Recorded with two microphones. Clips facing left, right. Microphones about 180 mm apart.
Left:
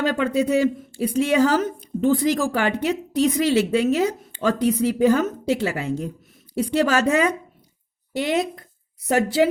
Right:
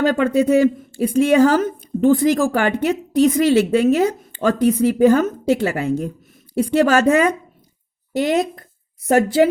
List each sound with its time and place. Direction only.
0.0 s a woman's voice: 45° right (ahead or behind)